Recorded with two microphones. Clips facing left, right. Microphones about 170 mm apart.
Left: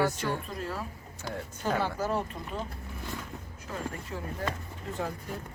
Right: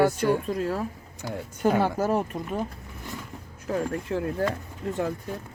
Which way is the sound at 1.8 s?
50° right (ahead or behind).